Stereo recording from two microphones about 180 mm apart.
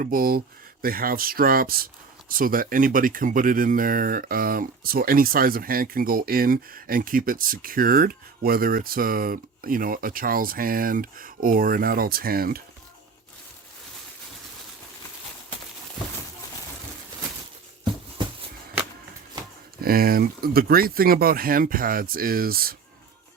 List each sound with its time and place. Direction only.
0.0 s speech: 55° right (ahead or behind)
19.8 s speech: 55° right (ahead or behind)